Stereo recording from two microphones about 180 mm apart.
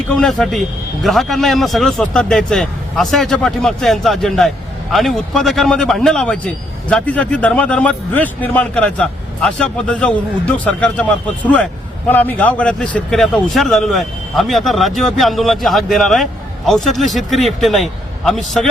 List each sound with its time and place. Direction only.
0.1 s a man's voice: centre (ahead or behind)